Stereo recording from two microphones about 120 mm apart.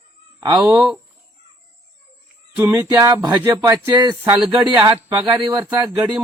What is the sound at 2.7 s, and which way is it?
Speech, 25° right (ahead or behind).